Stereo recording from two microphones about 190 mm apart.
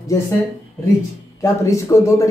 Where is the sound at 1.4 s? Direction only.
15° left (ahead or behind).